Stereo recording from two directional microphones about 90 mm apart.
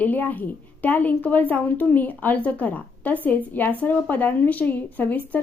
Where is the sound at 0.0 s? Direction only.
20° left (ahead or behind).